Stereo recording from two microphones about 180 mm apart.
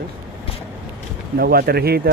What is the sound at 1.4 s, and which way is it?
Speech, 60° right (ahead or behind).